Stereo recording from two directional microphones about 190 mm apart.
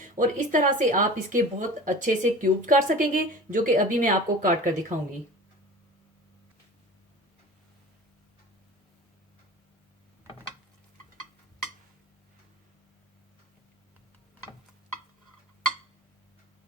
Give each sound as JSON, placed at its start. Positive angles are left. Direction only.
{"t": 0.0, "sound": "speech", "side_deg": -40}